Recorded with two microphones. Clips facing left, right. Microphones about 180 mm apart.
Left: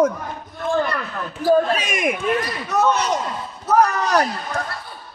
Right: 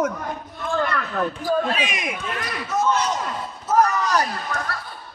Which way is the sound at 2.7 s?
65° left (ahead or behind).